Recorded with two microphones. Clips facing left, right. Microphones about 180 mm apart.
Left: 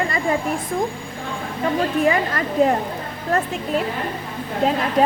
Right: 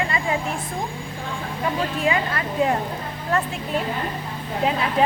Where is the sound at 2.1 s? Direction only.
40° left (ahead or behind).